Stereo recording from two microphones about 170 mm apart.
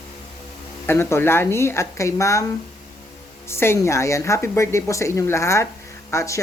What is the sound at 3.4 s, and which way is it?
A woman's voice, 15° left (ahead or behind).